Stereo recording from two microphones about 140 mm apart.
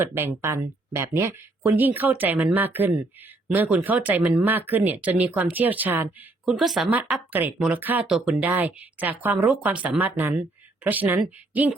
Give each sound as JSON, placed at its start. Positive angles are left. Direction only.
{"t": 0.0, "sound": "speech", "side_deg": -15}
{"t": 7.3, "sound": "speech", "side_deg": -15}